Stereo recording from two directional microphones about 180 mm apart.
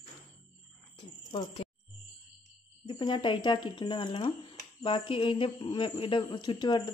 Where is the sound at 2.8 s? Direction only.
25° left (ahead or behind).